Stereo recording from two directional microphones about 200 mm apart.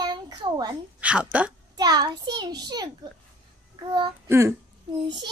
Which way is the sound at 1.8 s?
20° right (ahead or behind).